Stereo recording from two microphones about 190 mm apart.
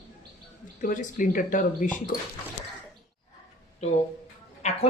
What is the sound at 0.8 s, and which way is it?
Speech, 45° left (ahead or behind).